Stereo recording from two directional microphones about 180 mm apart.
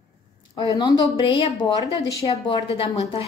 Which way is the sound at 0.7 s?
20° left (ahead or behind).